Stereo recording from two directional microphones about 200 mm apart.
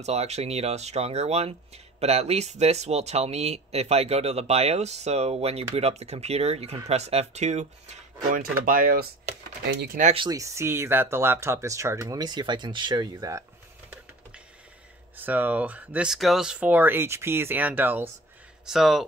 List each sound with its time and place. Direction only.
0.0 s speech: 35° right (ahead or behind)
10.1 s speech: 20° right (ahead or behind)
15.1 s speech: 10° right (ahead or behind)